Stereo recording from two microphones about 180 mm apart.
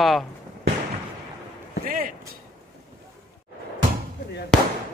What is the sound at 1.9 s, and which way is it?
Speech, 50° right (ahead or behind).